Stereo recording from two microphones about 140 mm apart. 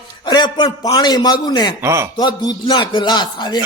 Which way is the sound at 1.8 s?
20° right (ahead or behind).